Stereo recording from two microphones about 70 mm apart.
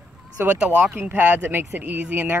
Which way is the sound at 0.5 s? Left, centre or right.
Centre.